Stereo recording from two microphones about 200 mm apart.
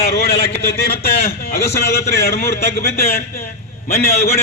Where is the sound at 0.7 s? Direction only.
50° left (ahead or behind).